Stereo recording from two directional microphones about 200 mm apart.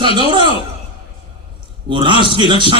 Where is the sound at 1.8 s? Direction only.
25° right (ahead or behind).